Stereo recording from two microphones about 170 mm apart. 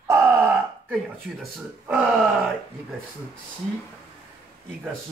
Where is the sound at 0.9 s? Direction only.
Centre (ahead or behind).